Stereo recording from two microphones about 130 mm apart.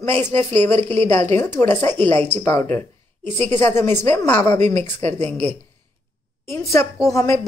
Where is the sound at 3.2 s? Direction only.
50° right (ahead or behind).